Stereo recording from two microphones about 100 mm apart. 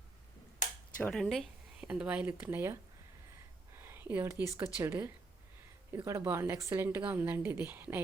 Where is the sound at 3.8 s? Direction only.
25° right (ahead or behind).